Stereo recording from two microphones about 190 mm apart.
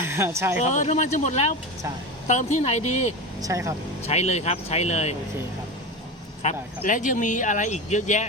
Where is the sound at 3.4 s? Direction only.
15° right (ahead or behind).